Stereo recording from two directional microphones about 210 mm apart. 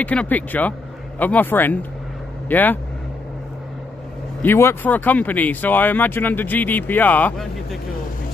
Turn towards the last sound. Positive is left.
turn(degrees=5)  # may be behind; listen again after turning